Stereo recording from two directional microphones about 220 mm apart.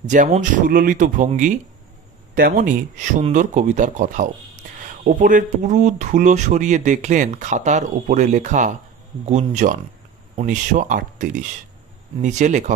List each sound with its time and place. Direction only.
0.0 s speech: 35° right (ahead or behind)